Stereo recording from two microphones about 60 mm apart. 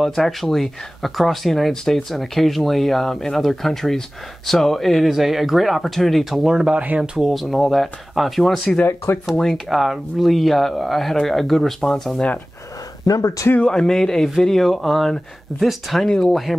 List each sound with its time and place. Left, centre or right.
0.0 s speech: centre
6.8 s speech: right
7.2 s speech: centre
8.8 s speech: left
9.5 s speech: centre
13.0 s speech: left
13.6 s speech: centre